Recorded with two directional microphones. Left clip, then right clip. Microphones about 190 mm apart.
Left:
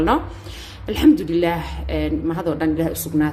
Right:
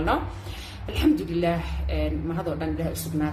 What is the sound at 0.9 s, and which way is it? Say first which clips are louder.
A woman's voice: left 8 dB; 45° left (ahead or behind).